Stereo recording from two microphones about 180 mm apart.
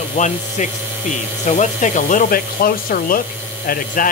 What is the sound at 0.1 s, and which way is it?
Speech, 40° left (ahead or behind).